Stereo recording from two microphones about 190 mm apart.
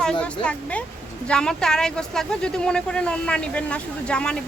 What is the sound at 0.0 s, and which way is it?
Speech, 5° left (ahead or behind).